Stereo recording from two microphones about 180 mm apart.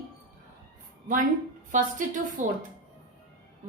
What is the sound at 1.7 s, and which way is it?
Speech, 45° right (ahead or behind).